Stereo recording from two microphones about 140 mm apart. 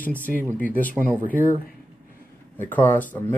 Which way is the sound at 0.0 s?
10° left (ahead or behind).